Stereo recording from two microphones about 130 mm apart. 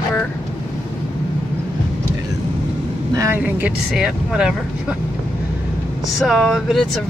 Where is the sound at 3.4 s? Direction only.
10° right (ahead or behind).